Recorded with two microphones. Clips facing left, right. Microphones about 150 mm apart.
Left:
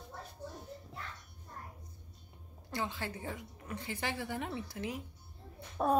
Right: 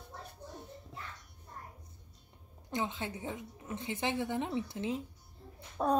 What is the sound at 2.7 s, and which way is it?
A woman's voice, 20° right (ahead or behind).